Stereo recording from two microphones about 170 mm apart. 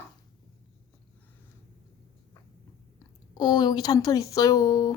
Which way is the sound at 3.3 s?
25° left (ahead or behind).